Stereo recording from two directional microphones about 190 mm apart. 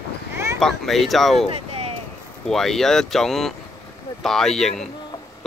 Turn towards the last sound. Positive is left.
turn(degrees=0)  # may be behind; listen again after turning